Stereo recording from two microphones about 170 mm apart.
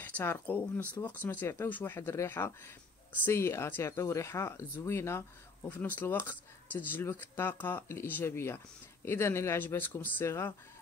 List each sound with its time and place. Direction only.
0.0 s speech: 10° left (ahead or behind)